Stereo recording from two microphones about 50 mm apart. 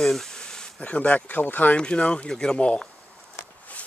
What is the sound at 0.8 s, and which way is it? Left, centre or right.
Speech, left.